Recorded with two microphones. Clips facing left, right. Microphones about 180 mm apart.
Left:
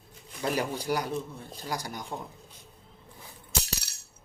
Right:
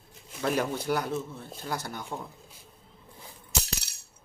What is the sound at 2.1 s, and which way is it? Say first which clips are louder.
Speech: right 1 dB; 15° left (ahead or behind).